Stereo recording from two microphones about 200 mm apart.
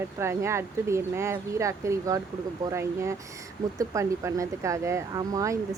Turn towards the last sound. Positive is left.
turn(degrees=-15)  # may be behind; listen again after turning